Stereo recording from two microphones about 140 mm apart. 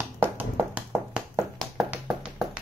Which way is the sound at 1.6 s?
Centre (ahead or behind).